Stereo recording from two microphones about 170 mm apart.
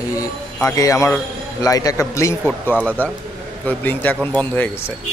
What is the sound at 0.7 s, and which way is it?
A man's voice, 20° left (ahead or behind).